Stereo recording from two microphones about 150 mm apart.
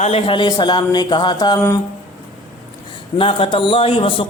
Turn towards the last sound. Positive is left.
turn(degrees=35)  # may be behind; listen again after turning